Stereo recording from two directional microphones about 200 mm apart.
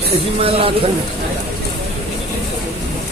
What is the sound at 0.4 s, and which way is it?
Speech, 30° right (ahead or behind).